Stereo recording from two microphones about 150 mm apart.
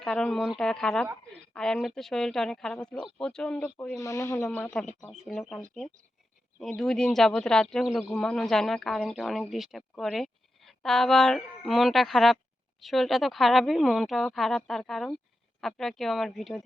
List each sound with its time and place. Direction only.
0.0 s speech: 5° left (ahead or behind)
4.0 s speech: 20° left (ahead or behind)
4.4 s speech: 10° left (ahead or behind)